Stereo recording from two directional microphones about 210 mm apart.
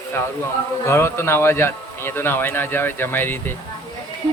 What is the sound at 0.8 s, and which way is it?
Speech, 10° left (ahead or behind).